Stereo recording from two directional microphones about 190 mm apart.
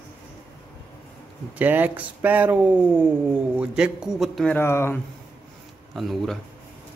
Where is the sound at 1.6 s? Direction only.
10° right (ahead or behind); by 5.0 s 15° left (ahead or behind).